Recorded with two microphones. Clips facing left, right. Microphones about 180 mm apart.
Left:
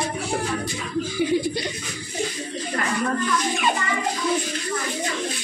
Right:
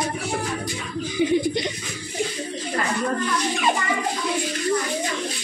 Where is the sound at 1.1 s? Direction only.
20° right (ahead or behind).